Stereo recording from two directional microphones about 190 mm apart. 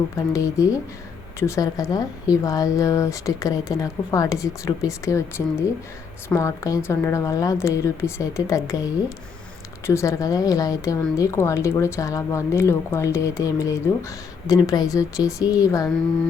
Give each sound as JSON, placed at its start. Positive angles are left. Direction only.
{"t": 0.3, "sound": "speech", "side_deg": 15}
{"t": 6.2, "sound": "speech", "side_deg": 15}